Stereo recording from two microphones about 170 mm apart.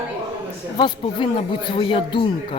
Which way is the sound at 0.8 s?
30° left (ahead or behind).